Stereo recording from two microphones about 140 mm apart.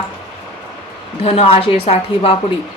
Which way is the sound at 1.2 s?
50° left (ahead or behind).